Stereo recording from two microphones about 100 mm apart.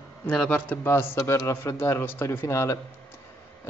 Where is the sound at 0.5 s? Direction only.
20° left (ahead or behind).